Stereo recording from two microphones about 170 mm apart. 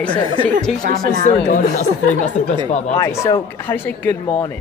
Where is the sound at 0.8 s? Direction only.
55° right (ahead or behind).